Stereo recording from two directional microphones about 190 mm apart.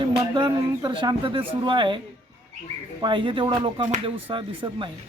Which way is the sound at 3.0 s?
25° right (ahead or behind).